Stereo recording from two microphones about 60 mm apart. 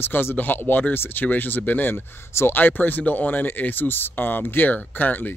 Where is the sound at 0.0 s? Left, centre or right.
Left.